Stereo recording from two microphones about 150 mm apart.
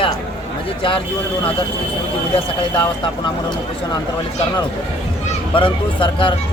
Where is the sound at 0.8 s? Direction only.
35° left (ahead or behind).